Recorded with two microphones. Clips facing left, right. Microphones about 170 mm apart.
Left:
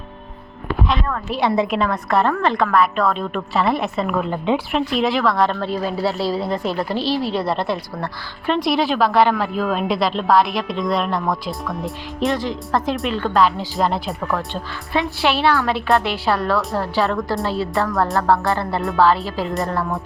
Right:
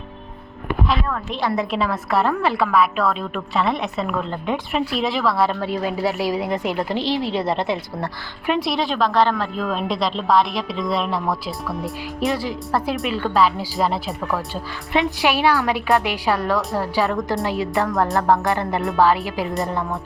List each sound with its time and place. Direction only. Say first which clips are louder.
0.9 s a woman's voice: even; 5° right (ahead or behind)
1.4 s a woman's voice: left 4 dB; 25° left (ahead or behind)
1.7 s a woman's voice: left 2 dB; 5° right (ahead or behind)
4.7 s a woman's voice: left 3 dB; 5° right (ahead or behind)
8.5 s a woman's voice: left 4 dB; centre (ahead or behind)